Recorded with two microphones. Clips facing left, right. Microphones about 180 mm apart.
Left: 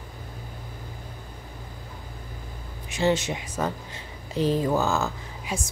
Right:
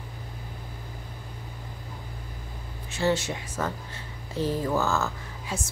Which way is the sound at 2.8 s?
15° left (ahead or behind).